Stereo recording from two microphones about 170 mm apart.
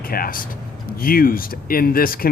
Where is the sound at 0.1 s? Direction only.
55° left (ahead or behind).